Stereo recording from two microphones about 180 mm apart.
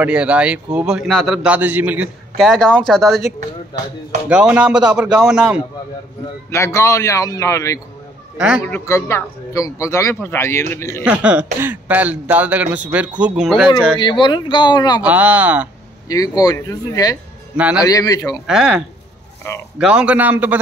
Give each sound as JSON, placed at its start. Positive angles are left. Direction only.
{"t": 0.0, "sound": "a man's voice", "side_deg": -5}
{"t": 2.3, "sound": "speech", "side_deg": 0}
{"t": 3.3, "sound": "speech", "side_deg": -45}
{"t": 4.3, "sound": "speech", "side_deg": -5}
{"t": 6.5, "sound": "a man's voice", "side_deg": 15}
{"t": 8.4, "sound": "speech", "side_deg": -5}
{"t": 8.6, "sound": "a man's voice", "side_deg": 15}
{"t": 11.1, "sound": "a man's voice", "side_deg": -10}
{"t": 13.9, "sound": "speech", "side_deg": 25}
{"t": 15.0, "sound": "a man's voice", "side_deg": -10}
{"t": 16.1, "sound": "speech", "side_deg": 20}
{"t": 17.6, "sound": "a man's voice", "side_deg": -10}
{"t": 17.8, "sound": "speech", "side_deg": 20}
{"t": 18.5, "sound": "a man's voice", "side_deg": -5}